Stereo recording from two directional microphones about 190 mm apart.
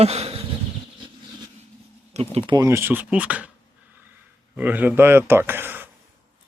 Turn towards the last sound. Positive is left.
turn(degrees=-10)  # may be behind; listen again after turning